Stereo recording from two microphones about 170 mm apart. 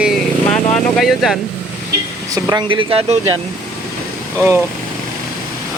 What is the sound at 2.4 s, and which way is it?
Speech, 25° right (ahead or behind).